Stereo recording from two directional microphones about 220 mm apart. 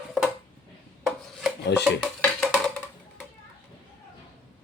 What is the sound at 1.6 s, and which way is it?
Speech, 50° left (ahead or behind).